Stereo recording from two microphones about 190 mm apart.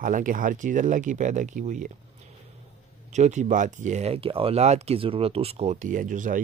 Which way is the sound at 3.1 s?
40° right (ahead or behind).